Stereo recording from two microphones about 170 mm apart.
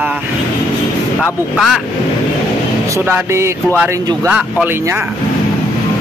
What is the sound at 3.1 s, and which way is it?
Speech, 15° right (ahead or behind).